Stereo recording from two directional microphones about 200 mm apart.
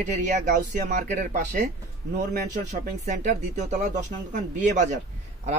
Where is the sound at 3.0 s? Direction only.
35° right (ahead or behind).